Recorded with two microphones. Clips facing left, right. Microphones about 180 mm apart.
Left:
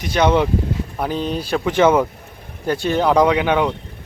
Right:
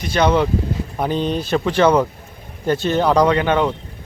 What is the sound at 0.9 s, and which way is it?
A man's voice, 5° left (ahead or behind).